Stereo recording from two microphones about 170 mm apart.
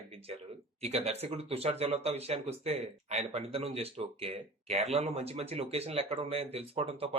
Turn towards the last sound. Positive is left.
turn(degrees=-35)  # may be behind; listen again after turning